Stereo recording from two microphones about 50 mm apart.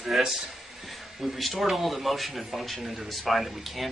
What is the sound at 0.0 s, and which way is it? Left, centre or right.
Speech, centre.